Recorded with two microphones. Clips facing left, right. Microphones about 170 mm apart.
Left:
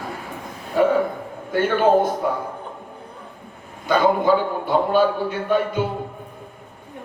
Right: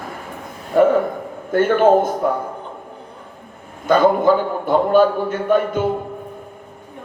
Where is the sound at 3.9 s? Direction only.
50° right (ahead or behind).